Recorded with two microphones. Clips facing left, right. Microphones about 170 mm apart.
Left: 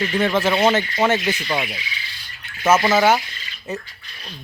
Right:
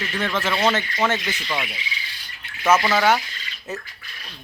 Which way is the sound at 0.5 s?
30° left (ahead or behind).